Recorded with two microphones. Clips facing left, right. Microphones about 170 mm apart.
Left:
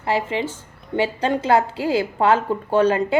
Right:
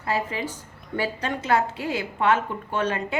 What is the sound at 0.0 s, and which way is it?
A woman's voice, 25° left (ahead or behind).